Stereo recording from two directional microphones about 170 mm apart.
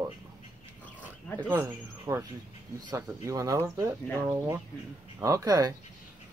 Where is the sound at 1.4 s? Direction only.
10° right (ahead or behind).